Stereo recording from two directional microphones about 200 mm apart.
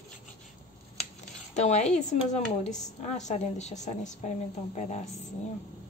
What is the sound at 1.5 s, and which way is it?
A woman's voice, 35° left (ahead or behind).